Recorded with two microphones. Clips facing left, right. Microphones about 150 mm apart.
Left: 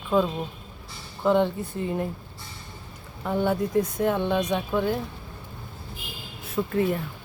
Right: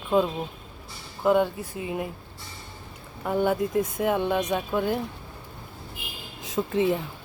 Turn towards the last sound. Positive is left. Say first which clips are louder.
# right 1 dB
turn(degrees=-20)  # may be behind; listen again after turning